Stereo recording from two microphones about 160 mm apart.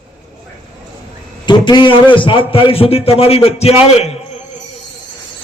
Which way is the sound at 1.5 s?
30° left (ahead or behind).